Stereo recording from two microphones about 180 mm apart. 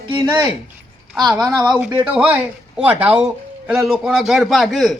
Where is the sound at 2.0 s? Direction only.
10° right (ahead or behind).